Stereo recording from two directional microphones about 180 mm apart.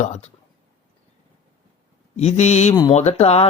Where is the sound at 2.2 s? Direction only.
35° left (ahead or behind).